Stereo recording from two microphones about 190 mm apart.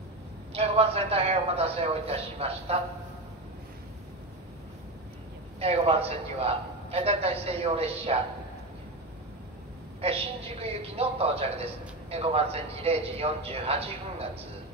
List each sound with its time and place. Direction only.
0.5 s a man's voice: 30° right (ahead or behind)
5.6 s a man's voice: 30° right (ahead or behind)
10.0 s a man's voice: 30° right (ahead or behind)